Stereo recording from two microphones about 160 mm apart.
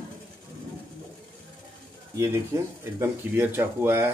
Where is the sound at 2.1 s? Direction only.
15° right (ahead or behind).